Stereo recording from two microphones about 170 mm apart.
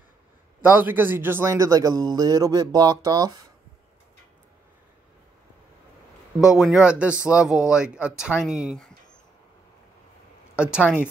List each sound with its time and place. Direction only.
0.6 s a man's voice: 10° right (ahead or behind)
6.6 s speech: 5° right (ahead or behind)
10.5 s speech: 5° right (ahead or behind)